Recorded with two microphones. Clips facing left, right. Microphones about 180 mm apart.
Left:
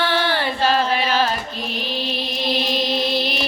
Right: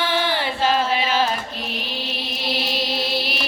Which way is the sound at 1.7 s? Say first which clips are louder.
Left 7 dB; 5° right (ahead or behind).